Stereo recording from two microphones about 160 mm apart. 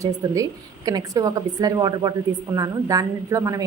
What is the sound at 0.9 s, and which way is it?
A woman's voice, 20° right (ahead or behind).